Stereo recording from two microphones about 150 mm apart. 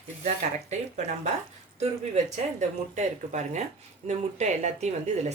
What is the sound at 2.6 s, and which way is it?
Speech, 50° right (ahead or behind).